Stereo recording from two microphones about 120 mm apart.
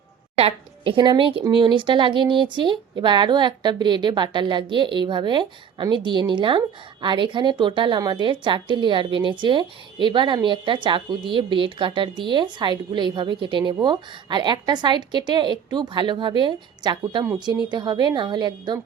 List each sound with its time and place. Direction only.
0.3 s a woman's voice: 50° right (ahead or behind)